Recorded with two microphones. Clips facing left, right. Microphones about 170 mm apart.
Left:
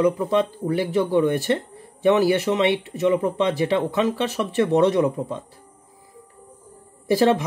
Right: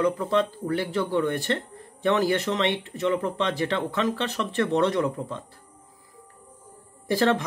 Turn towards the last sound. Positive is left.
turn(degrees=10)  # may be behind; listen again after turning